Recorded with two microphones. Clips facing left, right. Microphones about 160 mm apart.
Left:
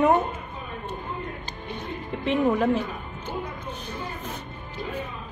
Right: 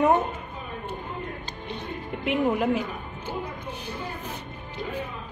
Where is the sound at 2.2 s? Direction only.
10° right (ahead or behind).